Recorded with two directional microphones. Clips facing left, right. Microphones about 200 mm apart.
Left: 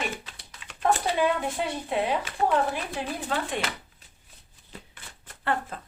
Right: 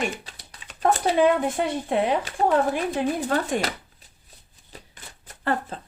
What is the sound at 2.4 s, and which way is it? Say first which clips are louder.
Speech: right 4 dB; 35° right (ahead or behind).